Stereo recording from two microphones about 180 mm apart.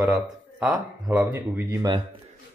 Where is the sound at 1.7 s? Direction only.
20° right (ahead or behind).